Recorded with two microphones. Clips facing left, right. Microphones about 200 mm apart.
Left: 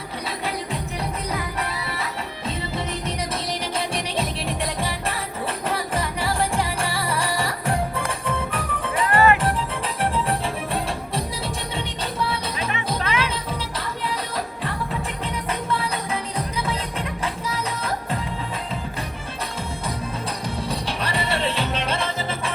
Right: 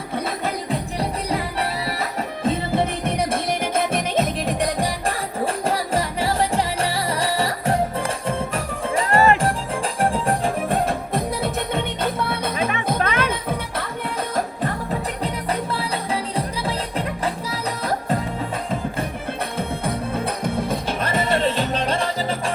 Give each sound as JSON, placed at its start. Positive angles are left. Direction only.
{"t": 0.4, "sound": "music", "side_deg": -35}
{"t": 15.2, "sound": "music", "side_deg": -35}
{"t": 19.5, "sound": "music", "side_deg": -55}